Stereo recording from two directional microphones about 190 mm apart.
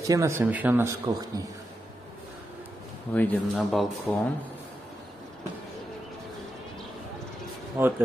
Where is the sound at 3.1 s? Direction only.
10° left (ahead or behind).